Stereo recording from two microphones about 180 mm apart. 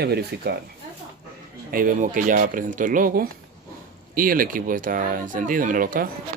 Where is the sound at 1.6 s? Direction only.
50° right (ahead or behind).